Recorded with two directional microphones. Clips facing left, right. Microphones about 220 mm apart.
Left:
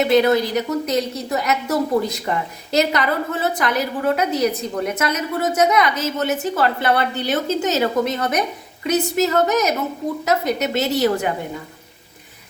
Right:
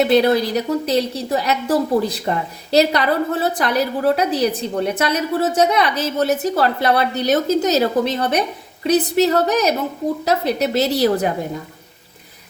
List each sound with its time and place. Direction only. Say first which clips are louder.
0.1 s a woman's voice: right 1 dB; 35° right (ahead or behind)